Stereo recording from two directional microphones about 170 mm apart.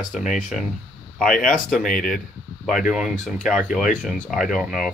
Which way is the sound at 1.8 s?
55° left (ahead or behind).